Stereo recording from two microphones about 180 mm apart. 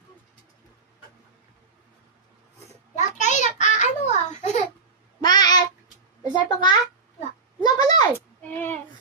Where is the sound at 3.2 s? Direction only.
40° left (ahead or behind).